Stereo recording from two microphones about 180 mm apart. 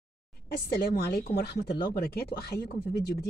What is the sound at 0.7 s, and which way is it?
Speech, 60° left (ahead or behind).